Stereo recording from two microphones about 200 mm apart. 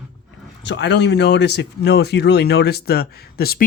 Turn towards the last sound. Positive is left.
turn(degrees=50)  # may be behind; listen again after turning